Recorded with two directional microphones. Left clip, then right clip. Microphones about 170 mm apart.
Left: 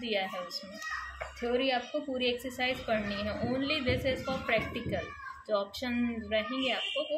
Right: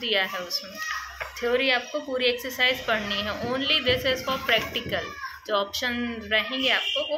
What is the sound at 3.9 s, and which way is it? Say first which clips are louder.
Speech: right 7 dB; 15° left (ahead or behind).